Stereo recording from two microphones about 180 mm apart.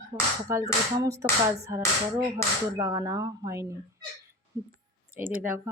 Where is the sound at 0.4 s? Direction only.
15° right (ahead or behind).